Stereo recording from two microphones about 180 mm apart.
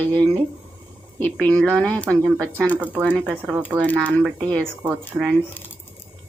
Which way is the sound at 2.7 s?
10° right (ahead or behind).